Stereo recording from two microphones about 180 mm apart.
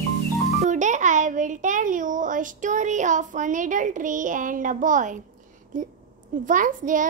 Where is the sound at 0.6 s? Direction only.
40° right (ahead or behind).